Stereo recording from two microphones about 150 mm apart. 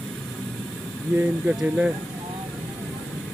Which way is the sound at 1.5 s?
5° right (ahead or behind).